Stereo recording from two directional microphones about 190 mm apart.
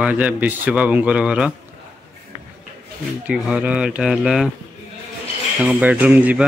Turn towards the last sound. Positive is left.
turn(degrees=-10)  # may be behind; listen again after turning